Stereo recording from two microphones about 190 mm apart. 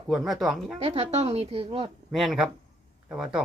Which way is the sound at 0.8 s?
35° right (ahead or behind).